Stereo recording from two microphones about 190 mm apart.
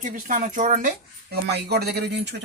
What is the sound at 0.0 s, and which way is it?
Speech, 45° right (ahead or behind).